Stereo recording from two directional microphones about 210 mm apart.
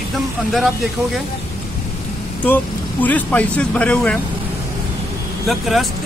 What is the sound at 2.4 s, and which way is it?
Speech, 10° left (ahead or behind).